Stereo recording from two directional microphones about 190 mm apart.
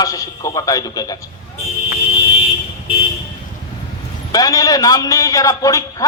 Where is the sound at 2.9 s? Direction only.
30° left (ahead or behind).